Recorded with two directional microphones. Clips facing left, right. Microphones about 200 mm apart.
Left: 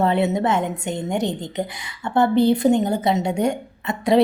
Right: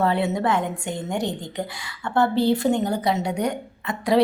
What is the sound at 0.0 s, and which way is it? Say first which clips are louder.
A woman's voice: left 3 dB; 20° left (ahead or behind).